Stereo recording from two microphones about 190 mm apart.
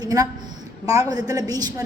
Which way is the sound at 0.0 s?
20° right (ahead or behind).